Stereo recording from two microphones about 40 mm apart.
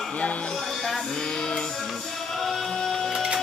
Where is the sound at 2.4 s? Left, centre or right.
Centre.